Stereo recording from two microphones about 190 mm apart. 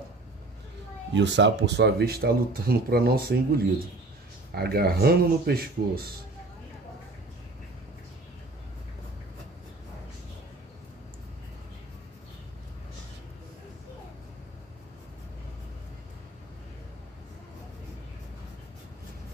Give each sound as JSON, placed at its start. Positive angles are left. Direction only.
{"t": 1.1, "sound": "speech", "side_deg": -70}